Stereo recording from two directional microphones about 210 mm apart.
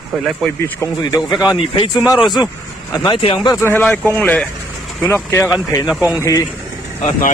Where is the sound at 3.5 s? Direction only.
10° left (ahead or behind).